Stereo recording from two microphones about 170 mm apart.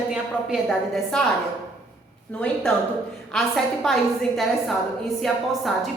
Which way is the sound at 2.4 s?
5° left (ahead or behind).